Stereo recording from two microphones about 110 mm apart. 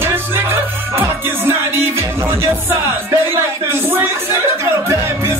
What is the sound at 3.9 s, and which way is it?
Music, 20° right (ahead or behind).